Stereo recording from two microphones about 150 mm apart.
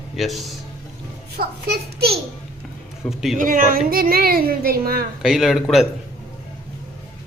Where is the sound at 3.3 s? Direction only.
65° right (ahead or behind); by 5.0 s 80° right.